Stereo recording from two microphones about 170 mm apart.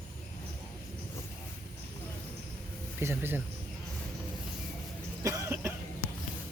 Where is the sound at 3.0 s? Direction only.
15° right (ahead or behind).